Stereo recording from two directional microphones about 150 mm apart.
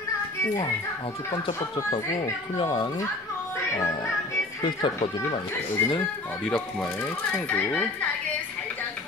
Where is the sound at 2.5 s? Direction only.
30° left (ahead or behind).